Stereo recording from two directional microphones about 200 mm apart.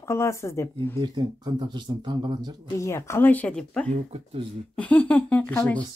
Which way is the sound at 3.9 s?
30° right (ahead or behind).